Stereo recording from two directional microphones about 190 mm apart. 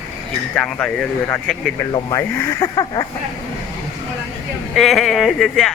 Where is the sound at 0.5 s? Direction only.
5° left (ahead or behind).